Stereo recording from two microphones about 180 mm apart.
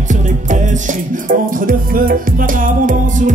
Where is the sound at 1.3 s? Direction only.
50° right (ahead or behind).